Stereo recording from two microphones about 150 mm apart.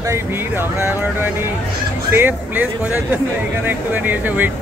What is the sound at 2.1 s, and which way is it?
Speech, 15° right (ahead or behind).